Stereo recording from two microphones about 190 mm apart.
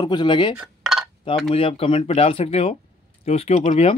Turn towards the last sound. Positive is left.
turn(degrees=30)  # may be behind; listen again after turning